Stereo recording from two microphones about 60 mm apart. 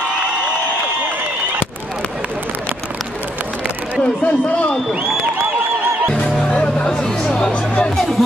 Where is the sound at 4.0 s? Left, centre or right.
Left.